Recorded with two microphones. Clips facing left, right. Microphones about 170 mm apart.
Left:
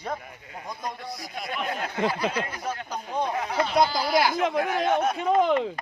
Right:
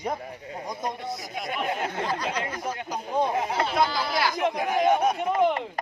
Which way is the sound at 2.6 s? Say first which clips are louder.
Right 1 dB; 10° right (ahead or behind).